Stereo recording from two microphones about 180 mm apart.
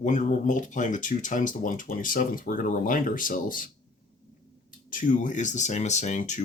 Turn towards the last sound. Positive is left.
turn(degrees=40)  # may be behind; listen again after turning